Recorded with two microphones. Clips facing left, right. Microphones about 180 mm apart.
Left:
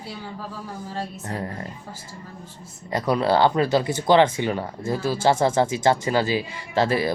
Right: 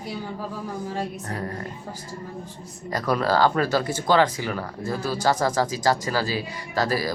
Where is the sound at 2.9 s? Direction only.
20° left (ahead or behind).